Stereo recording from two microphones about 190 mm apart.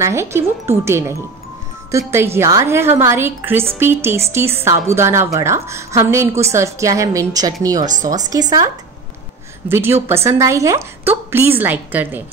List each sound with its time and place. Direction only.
0.0 s a woman's voice: 15° right (ahead or behind)
7.8 s speech: 40° right (ahead or behind)
8.1 s speech: 20° right (ahead or behind)
9.7 s a woman's voice: 10° right (ahead or behind)